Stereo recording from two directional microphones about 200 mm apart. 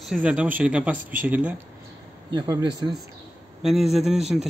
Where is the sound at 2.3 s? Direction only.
20° right (ahead or behind).